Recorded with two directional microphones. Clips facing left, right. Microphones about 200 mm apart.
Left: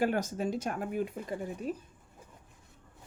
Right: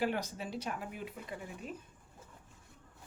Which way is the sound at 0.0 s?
45° left (ahead or behind).